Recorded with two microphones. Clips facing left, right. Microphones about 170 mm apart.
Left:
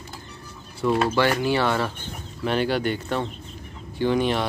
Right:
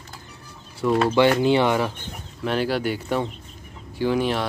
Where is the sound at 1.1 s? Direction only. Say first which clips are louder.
Right 4 dB; 20° right (ahead or behind).